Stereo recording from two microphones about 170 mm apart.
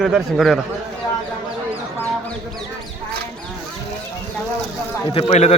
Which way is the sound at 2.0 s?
5° left (ahead or behind).